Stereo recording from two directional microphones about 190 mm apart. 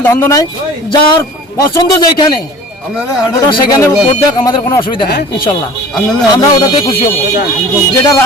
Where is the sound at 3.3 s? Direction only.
15° left (ahead or behind).